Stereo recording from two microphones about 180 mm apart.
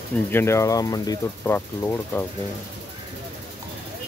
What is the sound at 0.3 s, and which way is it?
Speech, 15° left (ahead or behind).